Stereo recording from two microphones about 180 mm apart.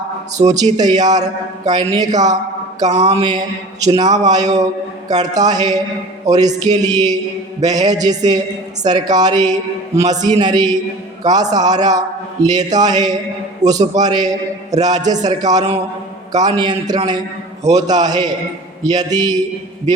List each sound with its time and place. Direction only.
0.3 s a man's voice: 20° right (ahead or behind)
2.9 s a man's voice: 35° right (ahead or behind)